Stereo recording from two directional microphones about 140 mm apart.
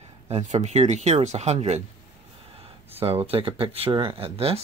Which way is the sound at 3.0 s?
45° right (ahead or behind).